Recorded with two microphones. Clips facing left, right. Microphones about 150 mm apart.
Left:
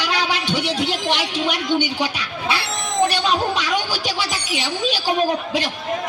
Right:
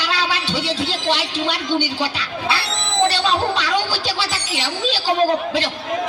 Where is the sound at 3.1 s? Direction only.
15° left (ahead or behind).